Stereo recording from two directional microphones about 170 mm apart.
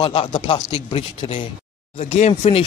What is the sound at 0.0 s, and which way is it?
Speech, 35° left (ahead or behind).